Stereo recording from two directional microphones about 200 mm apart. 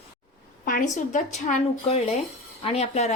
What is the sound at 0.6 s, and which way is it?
Speech, 40° left (ahead or behind).